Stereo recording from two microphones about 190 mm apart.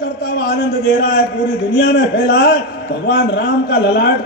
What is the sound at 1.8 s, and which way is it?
A man's voice, 75° left (ahead or behind).